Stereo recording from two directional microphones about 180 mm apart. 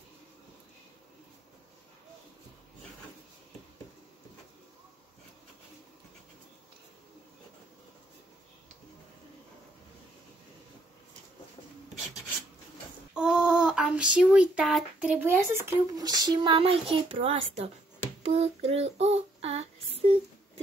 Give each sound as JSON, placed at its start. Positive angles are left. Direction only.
{"t": 13.1, "sound": "speech", "side_deg": -5}
{"t": 18.2, "sound": "child singing", "side_deg": -35}